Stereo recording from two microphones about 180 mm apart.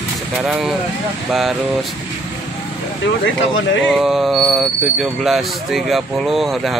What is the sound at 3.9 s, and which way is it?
Speech, centre (ahead or behind).